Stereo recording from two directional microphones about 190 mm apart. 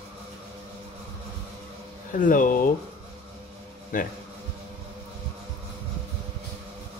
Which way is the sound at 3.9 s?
45° left (ahead or behind).